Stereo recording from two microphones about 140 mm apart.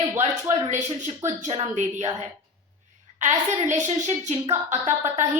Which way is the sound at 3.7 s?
60° right (ahead or behind).